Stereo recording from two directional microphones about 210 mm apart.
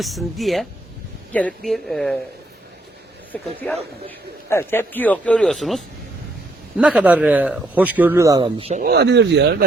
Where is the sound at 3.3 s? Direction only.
10° left (ahead or behind); by 8.8 s 30° right (ahead or behind).